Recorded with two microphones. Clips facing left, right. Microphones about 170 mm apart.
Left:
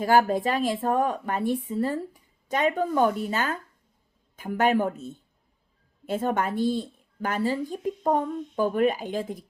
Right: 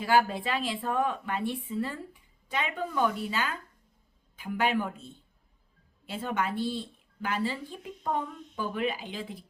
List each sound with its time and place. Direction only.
0.0 s a woman's voice: 45° left (ahead or behind)